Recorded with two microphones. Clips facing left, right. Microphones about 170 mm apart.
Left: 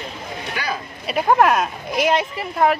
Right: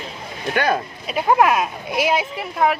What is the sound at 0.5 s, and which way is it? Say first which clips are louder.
Speech: right 8 dB; 60° right (ahead or behind).